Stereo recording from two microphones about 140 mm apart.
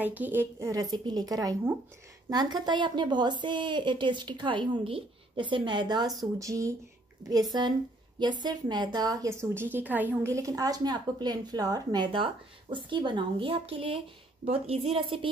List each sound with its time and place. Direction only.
0.0 s a woman's voice: 10° right (ahead or behind); by 15.2 s 40° right (ahead or behind)